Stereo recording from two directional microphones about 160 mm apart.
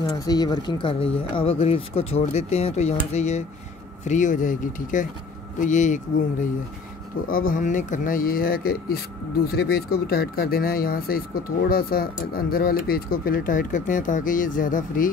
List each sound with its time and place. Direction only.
0.0 s speech: 25° left (ahead or behind); by 5.9 s 50° left (ahead or behind)
7.2 s speech: 60° left (ahead or behind)